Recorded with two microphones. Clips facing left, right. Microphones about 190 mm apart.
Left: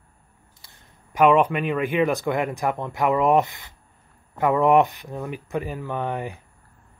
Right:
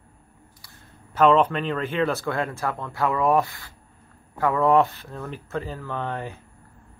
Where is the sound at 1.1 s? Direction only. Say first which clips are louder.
Left 1 dB; 10° left (ahead or behind).